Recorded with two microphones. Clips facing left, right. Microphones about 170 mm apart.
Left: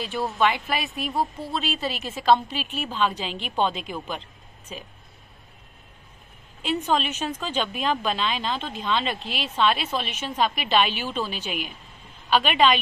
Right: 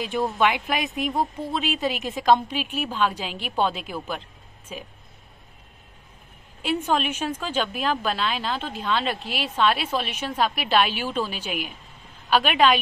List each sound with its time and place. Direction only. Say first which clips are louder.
0.0 s speech: right 1 dB; 15° right (ahead or behind)
6.9 s speech: even; 10° right (ahead or behind)